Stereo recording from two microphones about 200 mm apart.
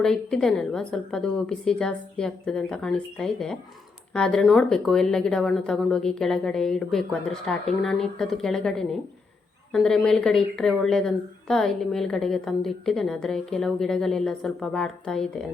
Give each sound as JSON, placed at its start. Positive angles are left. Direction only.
{"t": 0.0, "sound": "a woman's voice", "side_deg": 5}